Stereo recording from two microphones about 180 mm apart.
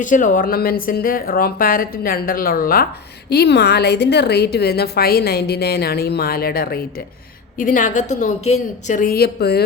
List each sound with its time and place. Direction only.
0.0 s speech: 45° left (ahead or behind)
3.2 s a woman's voice: 65° left (ahead or behind)
7.6 s speech: 45° left (ahead or behind); by 9.6 s 60° left (ahead or behind)